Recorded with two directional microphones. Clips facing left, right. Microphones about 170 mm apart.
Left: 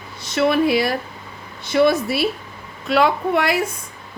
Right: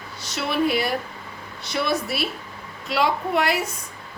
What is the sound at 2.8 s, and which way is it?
Speech, 60° left (ahead or behind).